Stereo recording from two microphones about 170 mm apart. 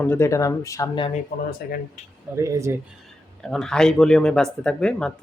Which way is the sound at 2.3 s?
15° right (ahead or behind).